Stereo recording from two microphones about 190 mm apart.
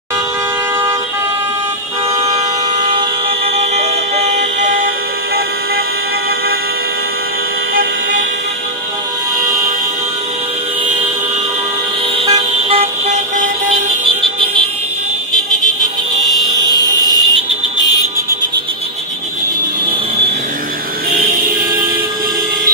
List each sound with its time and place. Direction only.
2.2 s vehicle: 20° right (ahead or behind)
3.5 s vehicle: 35° right (ahead or behind)
12.3 s car: 30° right (ahead or behind)
16.6 s fire alarm: 20° left (ahead or behind)